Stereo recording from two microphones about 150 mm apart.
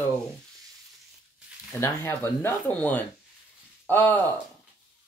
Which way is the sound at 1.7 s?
15° left (ahead or behind).